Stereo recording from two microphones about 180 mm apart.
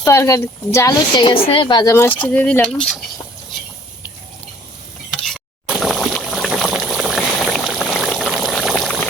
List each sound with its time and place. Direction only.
0.0 s speech: 15° left (ahead or behind)
5.2 s water: centre (ahead or behind)